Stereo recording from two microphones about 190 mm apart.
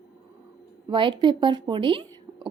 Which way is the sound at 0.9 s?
25° right (ahead or behind).